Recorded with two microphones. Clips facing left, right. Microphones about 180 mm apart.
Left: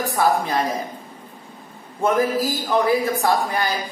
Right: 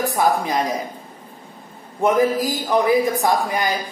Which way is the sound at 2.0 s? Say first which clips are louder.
Right 2 dB; 15° right (ahead or behind).